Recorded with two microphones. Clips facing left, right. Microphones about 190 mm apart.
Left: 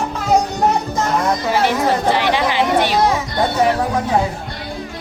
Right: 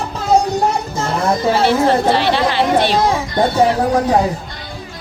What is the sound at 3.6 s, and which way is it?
Speech, 35° right (ahead or behind).